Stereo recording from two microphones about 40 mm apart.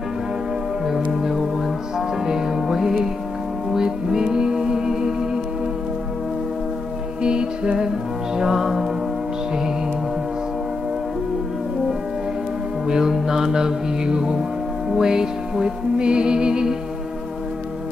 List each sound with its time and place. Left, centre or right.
1.1 s fowl: centre
2.0 s music: centre
7.2 s music: centre
8.4 s music: centre
12.8 s music: centre